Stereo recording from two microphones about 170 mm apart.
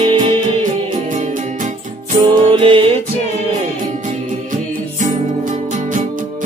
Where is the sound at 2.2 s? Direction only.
30° right (ahead or behind).